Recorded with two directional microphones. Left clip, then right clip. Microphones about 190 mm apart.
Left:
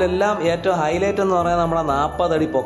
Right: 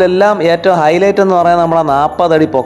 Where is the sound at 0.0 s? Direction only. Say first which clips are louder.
Right 9 dB; 35° right (ahead or behind).